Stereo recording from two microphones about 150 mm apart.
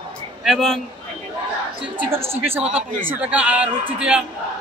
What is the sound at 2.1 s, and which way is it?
A man's voice, 15° right (ahead or behind).